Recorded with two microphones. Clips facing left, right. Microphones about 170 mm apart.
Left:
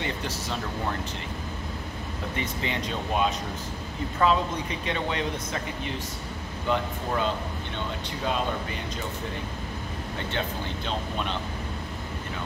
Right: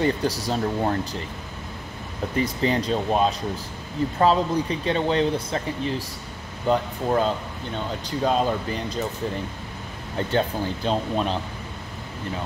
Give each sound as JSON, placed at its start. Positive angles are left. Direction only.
{"t": 0.0, "sound": "speech", "side_deg": -35}
{"t": 2.3, "sound": "speech", "side_deg": -35}
{"t": 10.9, "sound": "speech", "side_deg": -35}